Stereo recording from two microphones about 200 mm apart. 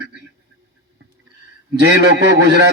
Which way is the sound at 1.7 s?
60° right (ahead or behind).